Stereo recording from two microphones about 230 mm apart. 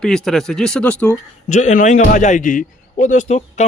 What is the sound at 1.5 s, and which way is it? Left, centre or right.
A man's voice, left.